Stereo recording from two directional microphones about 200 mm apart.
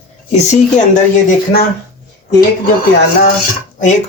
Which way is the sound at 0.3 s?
35° left (ahead or behind).